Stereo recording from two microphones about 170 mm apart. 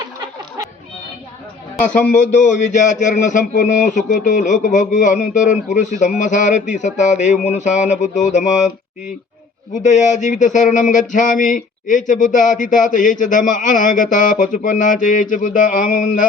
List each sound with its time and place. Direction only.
2.1 s speech: 50° left (ahead or behind)
9.8 s speech: 45° left (ahead or behind)